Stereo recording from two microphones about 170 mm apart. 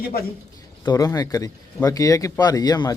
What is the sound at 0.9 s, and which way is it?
Speech, 20° left (ahead or behind).